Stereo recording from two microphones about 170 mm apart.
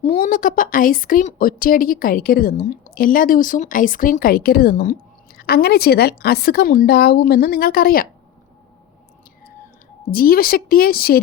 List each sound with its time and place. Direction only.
0.0 s speech: 55° left (ahead or behind)
5.4 s speech: 65° left (ahead or behind)
10.1 s speech: 60° left (ahead or behind)